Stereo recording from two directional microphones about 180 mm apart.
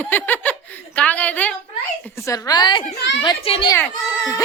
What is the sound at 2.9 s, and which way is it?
Speech, 85° left.